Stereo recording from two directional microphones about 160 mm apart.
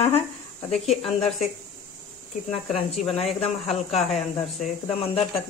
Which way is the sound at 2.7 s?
40° left (ahead or behind).